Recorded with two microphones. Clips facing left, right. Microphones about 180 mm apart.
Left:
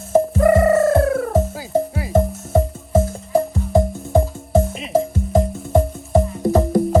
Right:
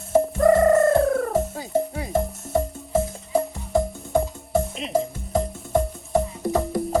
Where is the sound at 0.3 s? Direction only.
5° left (ahead or behind).